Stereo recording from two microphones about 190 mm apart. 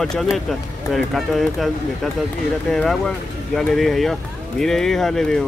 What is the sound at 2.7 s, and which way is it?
Speech, 5° left (ahead or behind).